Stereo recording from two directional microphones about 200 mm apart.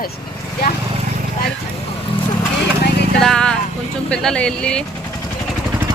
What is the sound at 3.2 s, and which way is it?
Speech, 5° left (ahead or behind).